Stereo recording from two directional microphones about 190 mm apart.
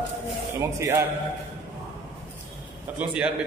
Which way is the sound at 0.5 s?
15° right (ahead or behind).